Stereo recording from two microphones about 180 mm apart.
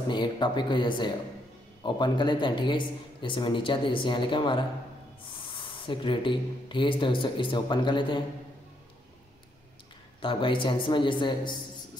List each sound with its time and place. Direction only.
0.1 s a man's voice: 25° left (ahead or behind)
10.2 s a man's voice: 30° left (ahead or behind)